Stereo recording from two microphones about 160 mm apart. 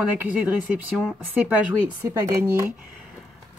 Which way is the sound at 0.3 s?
10° right (ahead or behind).